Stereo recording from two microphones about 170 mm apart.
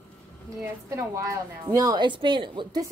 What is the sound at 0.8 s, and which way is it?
A woman's voice, 15° right (ahead or behind).